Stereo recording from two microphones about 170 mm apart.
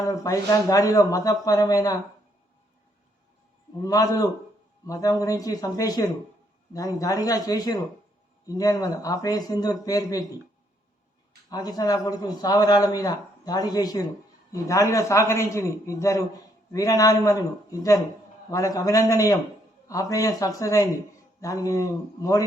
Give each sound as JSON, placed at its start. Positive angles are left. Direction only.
{"t": 0.0, "sound": "a man's voice", "side_deg": 20}
{"t": 3.8, "sound": "a man's voice", "side_deg": 20}
{"t": 11.4, "sound": "a man's voice", "side_deg": 25}